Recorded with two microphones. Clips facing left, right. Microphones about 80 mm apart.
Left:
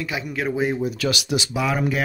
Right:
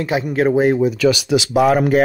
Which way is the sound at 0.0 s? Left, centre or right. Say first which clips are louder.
Right 9 dB; right.